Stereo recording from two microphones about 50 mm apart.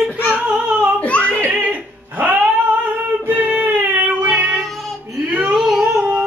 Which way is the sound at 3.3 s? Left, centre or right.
Right.